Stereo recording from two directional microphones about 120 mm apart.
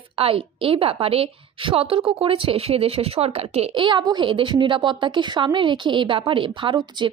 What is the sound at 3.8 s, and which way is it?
Speech, 40° right (ahead or behind).